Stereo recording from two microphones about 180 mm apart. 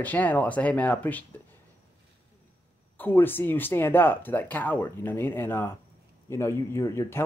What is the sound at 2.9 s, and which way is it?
Speech, 10° left (ahead or behind).